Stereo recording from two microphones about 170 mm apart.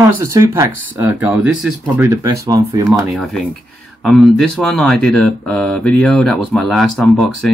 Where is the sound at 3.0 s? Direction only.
Centre (ahead or behind).